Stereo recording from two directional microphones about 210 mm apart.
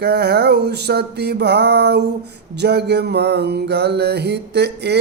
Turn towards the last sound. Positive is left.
turn(degrees=-55)  # may be behind; listen again after turning